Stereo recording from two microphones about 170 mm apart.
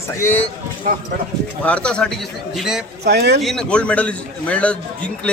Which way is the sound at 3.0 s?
75° right (ahead or behind).